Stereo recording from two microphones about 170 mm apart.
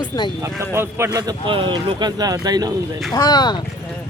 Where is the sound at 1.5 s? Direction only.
30° right (ahead or behind).